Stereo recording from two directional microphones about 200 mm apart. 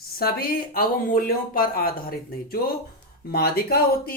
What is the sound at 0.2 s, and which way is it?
Speech, 50° left (ahead or behind).